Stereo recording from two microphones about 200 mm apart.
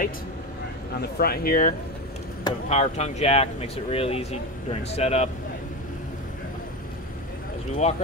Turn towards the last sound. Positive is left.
turn(degrees=35)  # may be behind; listen again after turning